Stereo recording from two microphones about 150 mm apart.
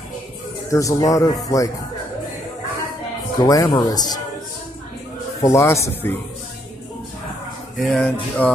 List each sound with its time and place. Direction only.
0.7 s speech: 20° left (ahead or behind)
3.3 s speech: 25° left (ahead or behind)
5.4 s speech: 20° left (ahead or behind)
7.7 s music: centre (ahead or behind)